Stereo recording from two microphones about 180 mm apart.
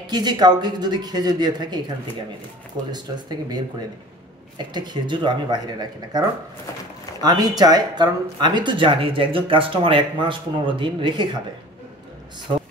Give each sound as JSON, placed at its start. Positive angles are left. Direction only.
{"t": 0.1, "sound": "speech", "side_deg": -25}
{"t": 2.9, "sound": "speech", "side_deg": -25}
{"t": 4.6, "sound": "speech", "side_deg": -25}